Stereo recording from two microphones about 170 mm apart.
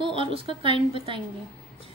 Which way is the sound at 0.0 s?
30° right (ahead or behind).